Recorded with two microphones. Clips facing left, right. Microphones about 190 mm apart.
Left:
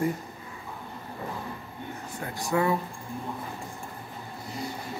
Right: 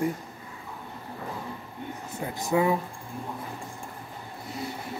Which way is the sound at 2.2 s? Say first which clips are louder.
Right 2 dB; 20° right (ahead or behind).